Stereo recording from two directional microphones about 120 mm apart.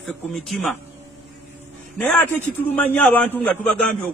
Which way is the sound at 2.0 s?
15° left (ahead or behind).